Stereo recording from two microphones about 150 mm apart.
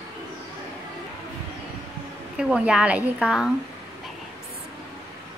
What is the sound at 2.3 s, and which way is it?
A woman's voice, 5° right (ahead or behind).